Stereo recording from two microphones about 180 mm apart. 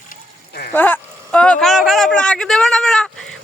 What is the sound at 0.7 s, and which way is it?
Speech, 10° left (ahead or behind).